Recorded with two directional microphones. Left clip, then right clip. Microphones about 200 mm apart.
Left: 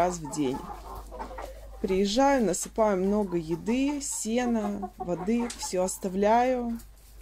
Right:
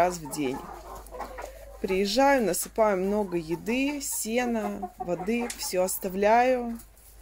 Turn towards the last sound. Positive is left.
turn(degrees=0)  # may be behind; listen again after turning